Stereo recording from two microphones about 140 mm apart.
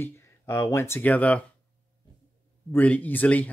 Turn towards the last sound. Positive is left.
turn(degrees=10)  # may be behind; listen again after turning